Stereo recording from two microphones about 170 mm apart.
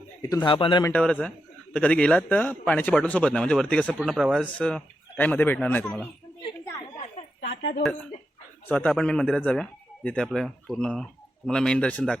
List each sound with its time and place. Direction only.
0.2 s a man's voice: 20° left (ahead or behind)
0.9 s a man's voice: 5° left (ahead or behind)
7.4 s a sound: 85° left
8.6 s a man's voice: 5° left (ahead or behind)